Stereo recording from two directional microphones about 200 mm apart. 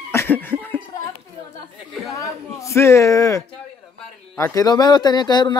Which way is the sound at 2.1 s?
15° left (ahead or behind).